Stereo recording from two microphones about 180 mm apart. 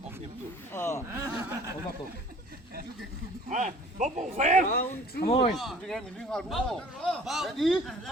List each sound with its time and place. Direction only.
0.7 s a sound: 15° left (ahead or behind)
1.2 s chuckle: 15° right (ahead or behind)
3.5 s speech: 45° right (ahead or behind)
5.2 s speech: 35° left (ahead or behind)
5.5 s a man's voice: centre (ahead or behind)